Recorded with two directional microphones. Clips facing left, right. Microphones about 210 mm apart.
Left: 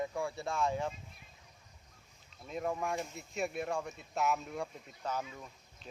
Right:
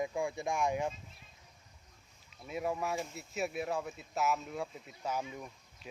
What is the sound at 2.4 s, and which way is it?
Speech, 5° right (ahead or behind).